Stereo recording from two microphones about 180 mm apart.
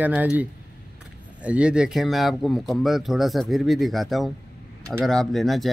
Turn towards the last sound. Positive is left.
turn(degrees=0)  # may be behind; listen again after turning